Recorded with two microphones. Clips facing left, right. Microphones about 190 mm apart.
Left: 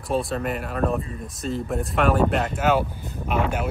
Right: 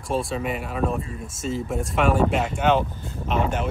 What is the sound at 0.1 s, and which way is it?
Speech, centre (ahead or behind).